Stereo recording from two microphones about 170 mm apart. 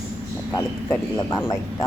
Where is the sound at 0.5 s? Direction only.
20° left (ahead or behind).